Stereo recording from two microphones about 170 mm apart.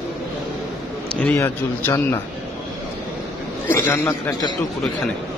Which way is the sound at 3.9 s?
20° left (ahead or behind).